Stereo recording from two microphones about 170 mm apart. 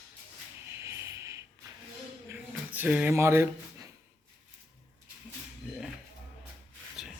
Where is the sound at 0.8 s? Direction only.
15° right (ahead or behind).